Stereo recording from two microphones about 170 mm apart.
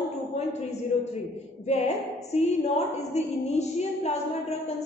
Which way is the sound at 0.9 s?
40° left (ahead or behind).